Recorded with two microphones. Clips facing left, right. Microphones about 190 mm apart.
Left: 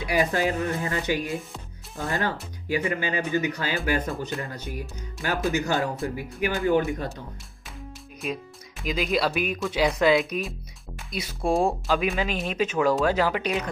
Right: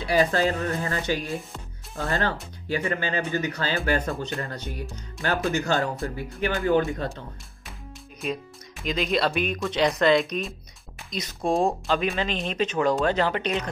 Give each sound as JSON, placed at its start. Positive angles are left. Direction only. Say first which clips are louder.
{"t": 0.0, "sound": "speech", "louder": "right 2 dB", "side_deg": 15}
{"t": 1.3, "sound": "music", "louder": "even", "side_deg": 0}
{"t": 2.0, "sound": "speech", "louder": "right 1 dB", "side_deg": 15}
{"t": 8.2, "sound": "speech", "louder": "right 1 dB", "side_deg": 0}